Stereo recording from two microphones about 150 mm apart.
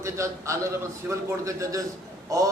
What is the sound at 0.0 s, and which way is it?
A man's voice, 20° right (ahead or behind).